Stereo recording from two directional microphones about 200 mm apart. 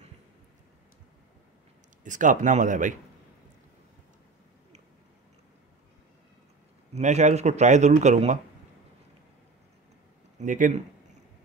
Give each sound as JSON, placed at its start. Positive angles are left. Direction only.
{"t": 2.0, "sound": "speech", "side_deg": -40}
{"t": 6.9, "sound": "speech", "side_deg": -35}
{"t": 10.4, "sound": "speech", "side_deg": -40}